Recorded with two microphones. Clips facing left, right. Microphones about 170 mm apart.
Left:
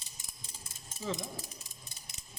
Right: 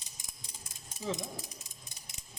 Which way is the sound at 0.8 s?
15° right (ahead or behind).